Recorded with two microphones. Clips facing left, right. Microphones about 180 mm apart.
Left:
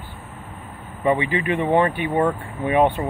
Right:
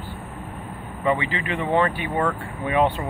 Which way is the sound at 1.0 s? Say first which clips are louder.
Left 3 dB; 15° left (ahead or behind).